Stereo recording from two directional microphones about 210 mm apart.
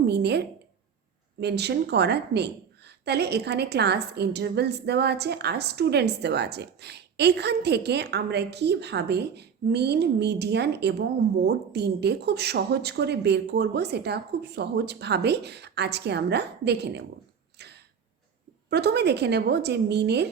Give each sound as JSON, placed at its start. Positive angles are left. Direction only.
{"t": 0.0, "sound": "a woman's voice", "side_deg": -50}
{"t": 17.6, "sound": "a sound", "side_deg": -50}
{"t": 18.7, "sound": "a woman's voice", "side_deg": -50}